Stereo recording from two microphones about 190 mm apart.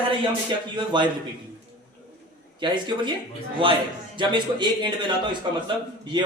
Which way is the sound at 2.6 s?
25° right (ahead or behind).